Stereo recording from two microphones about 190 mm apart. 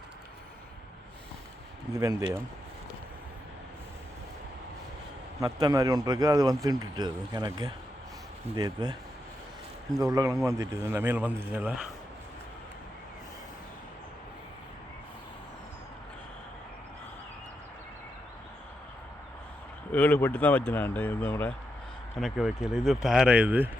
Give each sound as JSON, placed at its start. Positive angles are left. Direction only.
{"t": 1.9, "sound": "speech", "side_deg": -20}
{"t": 5.4, "sound": "speech", "side_deg": -20}
{"t": 10.0, "sound": "speech", "side_deg": -20}
{"t": 19.9, "sound": "speech", "side_deg": 10}
{"t": 22.2, "sound": "speech", "side_deg": 0}